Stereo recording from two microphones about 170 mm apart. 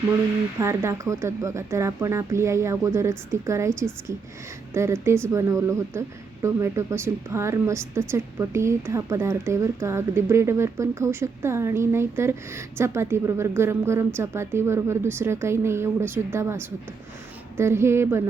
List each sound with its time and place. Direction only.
0.6 s a woman's voice: 15° right (ahead or behind)
4.7 s a woman's voice: 15° right (ahead or behind)
17.6 s a woman's voice: 15° right (ahead or behind)